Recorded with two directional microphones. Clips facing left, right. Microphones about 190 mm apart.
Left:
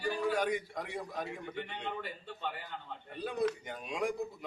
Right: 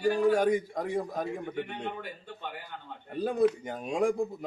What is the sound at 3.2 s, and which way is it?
A man's voice, 45° right (ahead or behind).